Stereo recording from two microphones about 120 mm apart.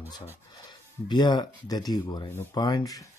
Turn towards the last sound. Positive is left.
turn(degrees=30)  # may be behind; listen again after turning